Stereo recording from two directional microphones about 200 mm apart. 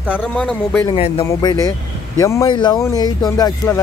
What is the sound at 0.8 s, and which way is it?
Speech, 25° left (ahead or behind).